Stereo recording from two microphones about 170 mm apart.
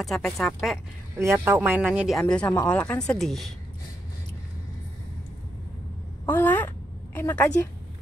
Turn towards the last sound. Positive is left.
turn(degrees=15)  # may be behind; listen again after turning